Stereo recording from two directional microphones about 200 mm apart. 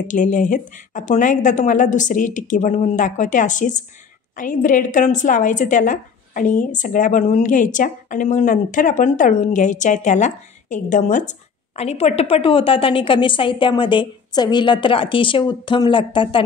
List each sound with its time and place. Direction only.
0.1 s a woman's voice: 40° left (ahead or behind)